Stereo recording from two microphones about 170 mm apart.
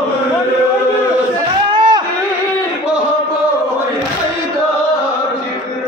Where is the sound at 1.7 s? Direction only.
30° right (ahead or behind).